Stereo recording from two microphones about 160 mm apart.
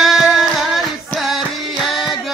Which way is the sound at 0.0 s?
Centre (ahead or behind).